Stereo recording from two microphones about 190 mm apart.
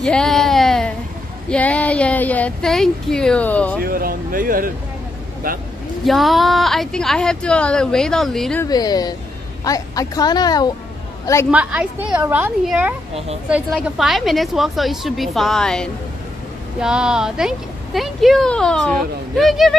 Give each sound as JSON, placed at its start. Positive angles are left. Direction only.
{"t": 0.0, "sound": "a sound", "side_deg": 5}
{"t": 1.5, "sound": "speech", "side_deg": 5}
{"t": 3.8, "sound": "speech", "side_deg": -50}
{"t": 6.0, "sound": "speech", "side_deg": 0}
{"t": 8.6, "sound": "a woman's voice", "side_deg": 20}
{"t": 11.5, "sound": "a woman's voice", "side_deg": -5}